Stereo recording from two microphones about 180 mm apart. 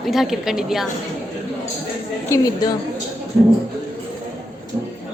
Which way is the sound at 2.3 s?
20° left (ahead or behind).